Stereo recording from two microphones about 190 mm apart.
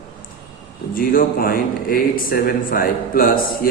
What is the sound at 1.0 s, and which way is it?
Speech, 50° left (ahead or behind).